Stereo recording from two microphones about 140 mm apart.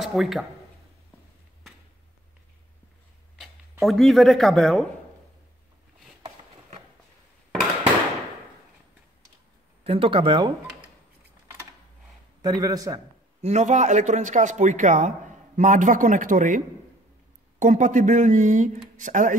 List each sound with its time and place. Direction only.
0.0 s speech: centre (ahead or behind)
3.8 s speech: centre (ahead or behind)
9.8 s speech: 40° right (ahead or behind)
12.4 s a man's voice: 30° right (ahead or behind)
13.4 s speech: 55° right (ahead or behind)